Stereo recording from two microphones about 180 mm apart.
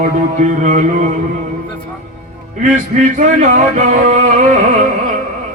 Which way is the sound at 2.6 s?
45° right (ahead or behind).